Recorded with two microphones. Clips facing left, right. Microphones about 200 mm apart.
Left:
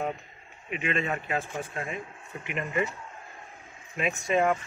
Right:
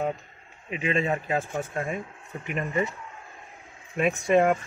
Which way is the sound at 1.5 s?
50° right (ahead or behind).